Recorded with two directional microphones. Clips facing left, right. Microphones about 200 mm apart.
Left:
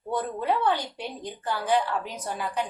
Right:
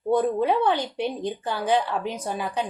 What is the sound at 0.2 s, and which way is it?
Speech, 20° right (ahead or behind).